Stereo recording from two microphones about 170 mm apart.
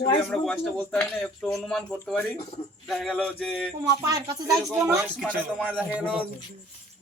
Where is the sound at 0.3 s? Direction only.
10° left (ahead or behind).